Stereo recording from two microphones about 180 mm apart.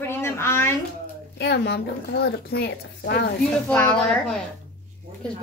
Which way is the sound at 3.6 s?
10° left (ahead or behind).